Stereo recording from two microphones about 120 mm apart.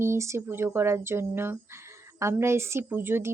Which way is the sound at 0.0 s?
25° right (ahead or behind).